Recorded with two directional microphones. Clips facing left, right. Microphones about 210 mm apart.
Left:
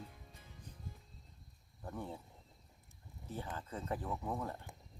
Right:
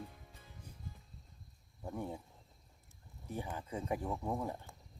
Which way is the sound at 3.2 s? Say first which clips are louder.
Right 2 dB; 15° right (ahead or behind).